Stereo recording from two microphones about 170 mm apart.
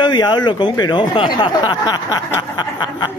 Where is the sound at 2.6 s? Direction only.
25° left (ahead or behind).